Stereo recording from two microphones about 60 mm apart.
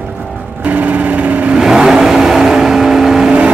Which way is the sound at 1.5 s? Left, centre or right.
Centre.